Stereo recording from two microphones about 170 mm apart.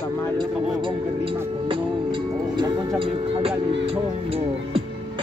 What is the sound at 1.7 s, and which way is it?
Music, 25° right (ahead or behind).